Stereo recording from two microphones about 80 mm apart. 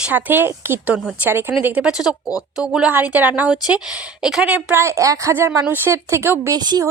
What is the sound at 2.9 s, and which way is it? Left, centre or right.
A woman's voice, right.